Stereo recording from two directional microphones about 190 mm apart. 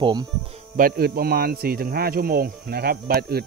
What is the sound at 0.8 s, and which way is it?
Speech, 50° right (ahead or behind).